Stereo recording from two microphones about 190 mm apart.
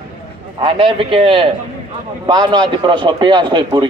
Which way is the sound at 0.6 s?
25° right (ahead or behind).